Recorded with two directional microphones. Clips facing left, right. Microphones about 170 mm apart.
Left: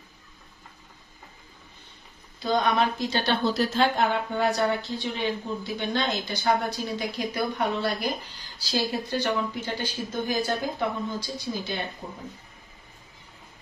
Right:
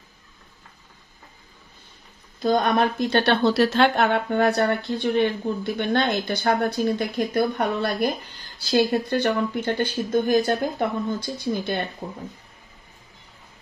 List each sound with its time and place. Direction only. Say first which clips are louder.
2.4 s a woman's voice: right 4 dB; 50° right (ahead or behind)